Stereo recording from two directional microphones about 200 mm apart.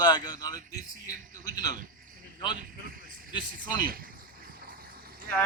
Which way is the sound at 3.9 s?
45° right (ahead or behind).